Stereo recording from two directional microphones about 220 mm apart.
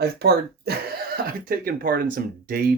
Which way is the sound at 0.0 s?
45° right (ahead or behind).